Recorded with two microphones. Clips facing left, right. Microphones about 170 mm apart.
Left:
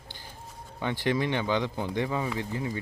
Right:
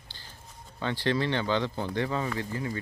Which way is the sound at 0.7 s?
15° left (ahead or behind).